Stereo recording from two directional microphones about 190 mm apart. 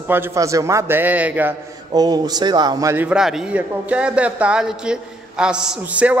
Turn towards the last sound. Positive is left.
turn(degrees=-5)  # may be behind; listen again after turning